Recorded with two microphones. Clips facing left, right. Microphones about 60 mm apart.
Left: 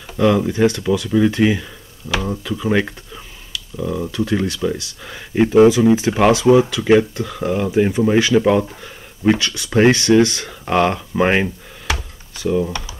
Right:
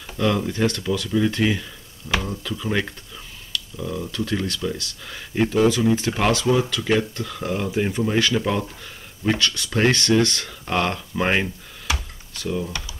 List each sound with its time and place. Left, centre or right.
0.2 s speech: centre